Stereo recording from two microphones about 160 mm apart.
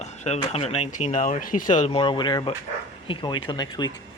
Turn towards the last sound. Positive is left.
turn(degrees=25)  # may be behind; listen again after turning